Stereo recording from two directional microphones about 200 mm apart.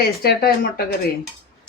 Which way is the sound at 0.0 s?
50° left (ahead or behind).